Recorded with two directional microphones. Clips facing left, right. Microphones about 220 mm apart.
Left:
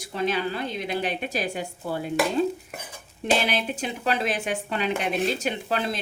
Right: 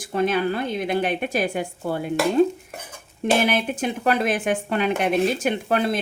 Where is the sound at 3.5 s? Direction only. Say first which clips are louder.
Right 5 dB; 50° right (ahead or behind).